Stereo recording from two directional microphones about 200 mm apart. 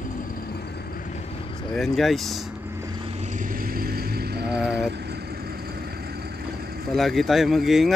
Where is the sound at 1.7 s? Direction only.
Centre (ahead or behind).